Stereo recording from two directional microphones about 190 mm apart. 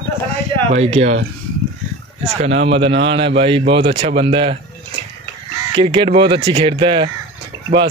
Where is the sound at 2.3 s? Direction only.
35° right (ahead or behind).